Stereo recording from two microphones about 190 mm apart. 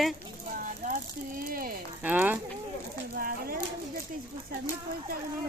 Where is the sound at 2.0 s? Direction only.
10° right (ahead or behind).